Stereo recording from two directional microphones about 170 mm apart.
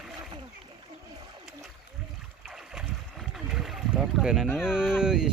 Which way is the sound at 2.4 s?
Centre (ahead or behind).